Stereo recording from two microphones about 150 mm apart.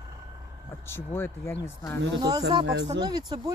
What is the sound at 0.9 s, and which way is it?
Speech, 15° left (ahead or behind).